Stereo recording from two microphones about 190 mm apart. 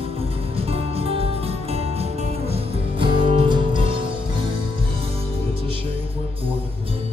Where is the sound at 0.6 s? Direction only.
30° right (ahead or behind).